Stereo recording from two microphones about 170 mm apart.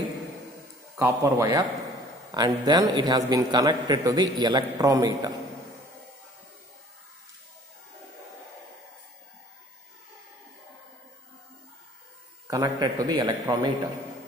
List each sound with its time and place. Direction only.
0.9 s a man's voice: 20° right (ahead or behind)
12.4 s a man's voice: 20° right (ahead or behind)